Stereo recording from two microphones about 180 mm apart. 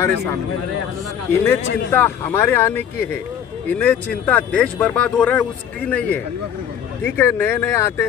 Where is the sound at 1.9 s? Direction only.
10° left (ahead or behind).